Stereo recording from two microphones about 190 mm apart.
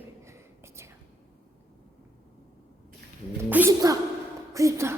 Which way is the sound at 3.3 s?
10° right (ahead or behind).